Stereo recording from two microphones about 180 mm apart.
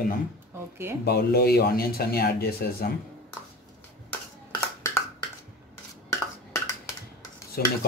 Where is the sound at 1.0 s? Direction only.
65° left (ahead or behind).